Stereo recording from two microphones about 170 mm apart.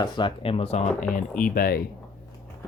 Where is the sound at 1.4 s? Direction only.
60° left (ahead or behind).